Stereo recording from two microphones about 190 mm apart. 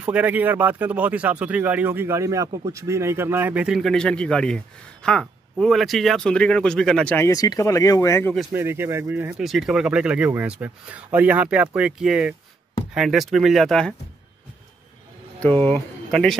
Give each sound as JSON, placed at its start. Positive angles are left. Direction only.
{"t": 0.0, "sound": "speech", "side_deg": -10}
{"t": 7.2, "sound": "speech", "side_deg": 20}
{"t": 8.5, "sound": "speech", "side_deg": -10}
{"t": 15.6, "sound": "speech", "side_deg": 5}